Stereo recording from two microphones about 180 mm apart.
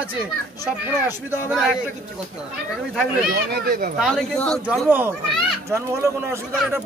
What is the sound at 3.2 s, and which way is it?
Speech, 55° right (ahead or behind).